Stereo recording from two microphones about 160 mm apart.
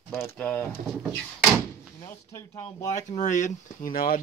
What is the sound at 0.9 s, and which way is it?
Door, 10° right (ahead or behind).